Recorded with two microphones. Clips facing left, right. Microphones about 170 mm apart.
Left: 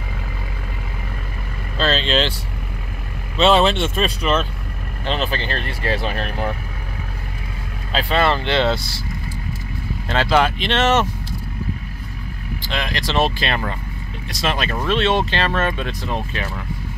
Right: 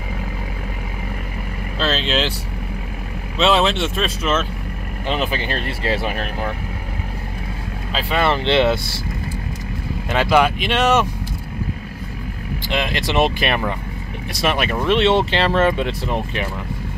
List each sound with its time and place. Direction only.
1.8 s speech: 5° right (ahead or behind)
3.3 s speech: centre (ahead or behind)
7.9 s speech: 10° right (ahead or behind)
10.0 s speech: 10° right (ahead or behind)
12.6 s speech: 20° right (ahead or behind)
14.9 s speech: 20° right (ahead or behind)